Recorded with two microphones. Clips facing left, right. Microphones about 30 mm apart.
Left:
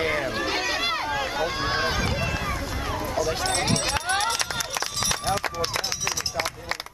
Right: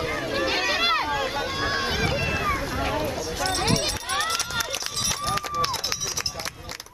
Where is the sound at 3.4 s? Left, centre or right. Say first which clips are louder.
Right 1 dB; centre.